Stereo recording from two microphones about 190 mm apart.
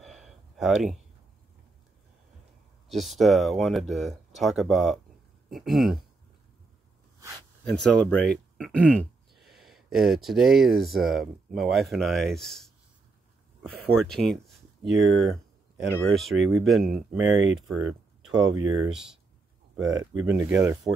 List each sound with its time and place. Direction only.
0.2 s a sound: centre (ahead or behind)
2.9 s speech: centre (ahead or behind)
7.8 s speech: 5° left (ahead or behind)
13.9 s speech: centre (ahead or behind)
18.3 s speech: 20° right (ahead or behind)
18.9 s speech: 5° right (ahead or behind)
19.8 s speech: 20° right (ahead or behind)